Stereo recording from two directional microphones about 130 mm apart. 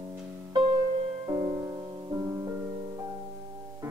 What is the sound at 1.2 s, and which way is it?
Music, 40° right (ahead or behind).